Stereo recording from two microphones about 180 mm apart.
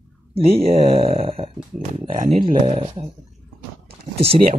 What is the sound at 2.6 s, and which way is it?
Speech, 30° right (ahead or behind).